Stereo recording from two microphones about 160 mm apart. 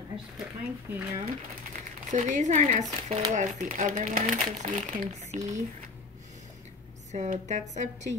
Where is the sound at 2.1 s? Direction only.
50° right (ahead or behind).